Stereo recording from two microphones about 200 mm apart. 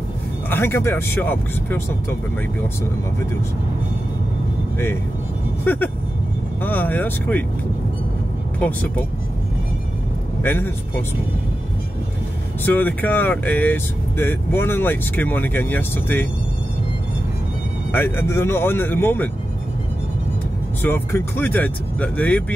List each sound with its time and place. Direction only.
0.5 s speech: 10° left (ahead or behind)
5.6 s speech: 10° left (ahead or behind)
8.5 s speech: 10° left (ahead or behind)
10.4 s speech: 10° left (ahead or behind)
12.6 s speech: 10° left (ahead or behind)
17.9 s speech: 10° left (ahead or behind)
20.8 s speech: 10° left (ahead or behind)